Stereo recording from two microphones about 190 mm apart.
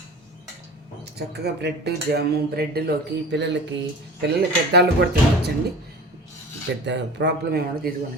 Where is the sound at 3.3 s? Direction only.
65° right (ahead or behind).